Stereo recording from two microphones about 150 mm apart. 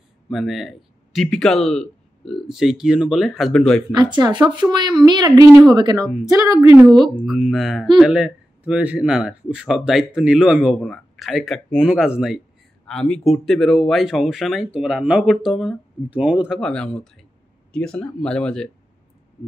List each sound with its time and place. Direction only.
0.3 s speech: centre (ahead or behind)
3.9 s a woman's voice: 30° right (ahead or behind)
6.8 s speech: centre (ahead or behind)